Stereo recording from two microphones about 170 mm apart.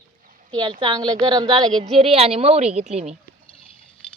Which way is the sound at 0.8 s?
25° right (ahead or behind).